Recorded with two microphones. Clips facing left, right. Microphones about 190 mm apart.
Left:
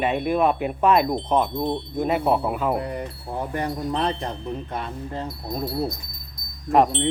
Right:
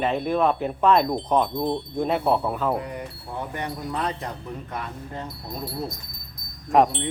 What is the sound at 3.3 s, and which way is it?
Chime, 35° left (ahead or behind).